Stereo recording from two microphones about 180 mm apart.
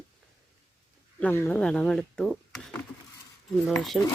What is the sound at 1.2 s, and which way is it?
Speech, 10° left (ahead or behind).